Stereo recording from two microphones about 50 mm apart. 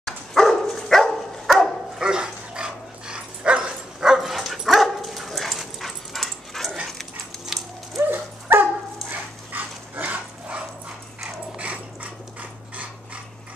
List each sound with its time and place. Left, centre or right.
0.0 s dog: centre
1.5 s dog: centre
4.0 s dog: centre
8.1 s dog: right
9.1 s dog: right
11.5 s mechanisms: right